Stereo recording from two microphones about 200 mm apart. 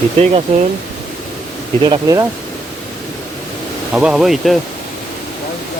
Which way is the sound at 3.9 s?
5° right (ahead or behind).